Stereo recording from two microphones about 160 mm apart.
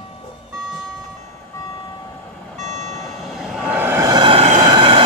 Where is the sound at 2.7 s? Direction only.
45° right (ahead or behind).